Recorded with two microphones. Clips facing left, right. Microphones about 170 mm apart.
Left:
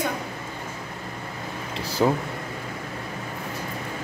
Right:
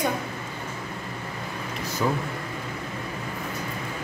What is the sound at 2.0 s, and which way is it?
Speech, 35° left (ahead or behind).